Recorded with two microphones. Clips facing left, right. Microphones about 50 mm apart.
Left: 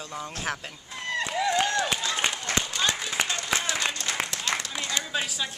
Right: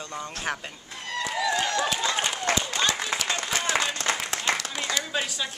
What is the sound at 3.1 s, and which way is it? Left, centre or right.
Applause, right.